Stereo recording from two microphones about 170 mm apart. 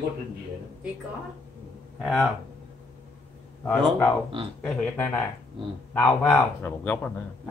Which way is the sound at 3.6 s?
10° left (ahead or behind).